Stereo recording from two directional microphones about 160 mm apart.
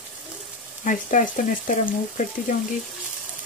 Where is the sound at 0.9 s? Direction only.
55° left (ahead or behind).